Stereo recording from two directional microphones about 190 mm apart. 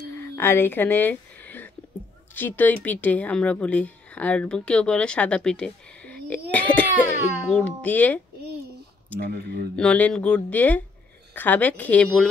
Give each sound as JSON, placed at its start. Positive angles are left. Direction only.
{"t": 0.1, "sound": "a sound", "side_deg": 10}
{"t": 2.3, "sound": "speech", "side_deg": 10}
{"t": 9.2, "sound": "speech", "side_deg": -60}
{"t": 9.8, "sound": "speech", "side_deg": 5}